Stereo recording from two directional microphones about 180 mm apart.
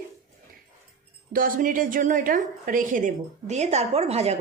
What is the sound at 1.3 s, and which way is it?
A woman's voice, 50° right (ahead or behind).